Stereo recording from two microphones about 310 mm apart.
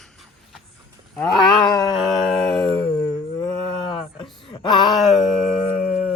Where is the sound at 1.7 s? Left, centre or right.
Centre.